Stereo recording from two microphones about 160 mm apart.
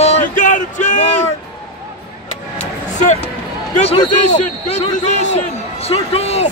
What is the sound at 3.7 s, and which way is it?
A man's voice, 40° left (ahead or behind).